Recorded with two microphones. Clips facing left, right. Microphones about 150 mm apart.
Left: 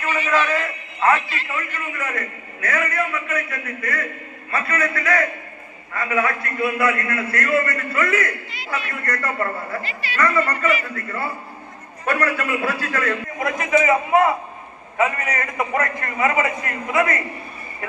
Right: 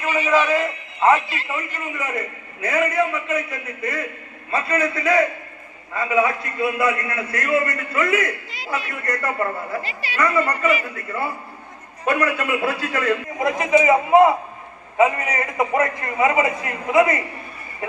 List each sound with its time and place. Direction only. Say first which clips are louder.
0.0 s a man's voice: right 2 dB; 15° right (ahead or behind)